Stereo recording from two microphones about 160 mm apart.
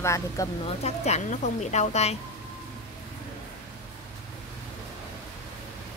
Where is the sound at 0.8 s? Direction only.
45° left (ahead or behind).